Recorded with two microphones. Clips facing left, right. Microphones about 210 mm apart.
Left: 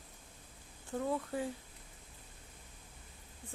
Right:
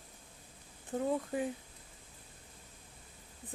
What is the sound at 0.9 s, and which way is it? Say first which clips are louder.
Speech: right 2 dB; 20° right (ahead or behind).